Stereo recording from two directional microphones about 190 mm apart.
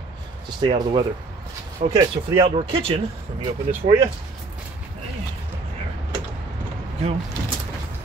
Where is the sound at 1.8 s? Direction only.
40° right (ahead or behind).